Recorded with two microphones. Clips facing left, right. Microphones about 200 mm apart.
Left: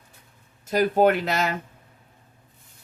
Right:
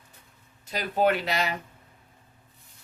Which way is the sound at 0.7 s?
50° left (ahead or behind).